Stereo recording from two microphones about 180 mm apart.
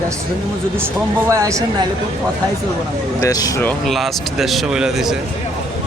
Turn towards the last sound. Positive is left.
turn(degrees=-5)  # may be behind; listen again after turning